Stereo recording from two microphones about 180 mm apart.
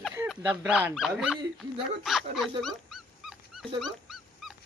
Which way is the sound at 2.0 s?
Centre (ahead or behind).